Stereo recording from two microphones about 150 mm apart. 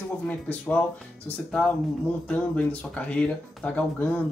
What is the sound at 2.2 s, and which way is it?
Speech, 10° left (ahead or behind).